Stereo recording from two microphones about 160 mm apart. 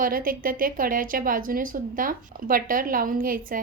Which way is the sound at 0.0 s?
60° right (ahead or behind).